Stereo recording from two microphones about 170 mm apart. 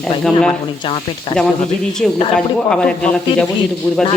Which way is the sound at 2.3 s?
5° left (ahead or behind).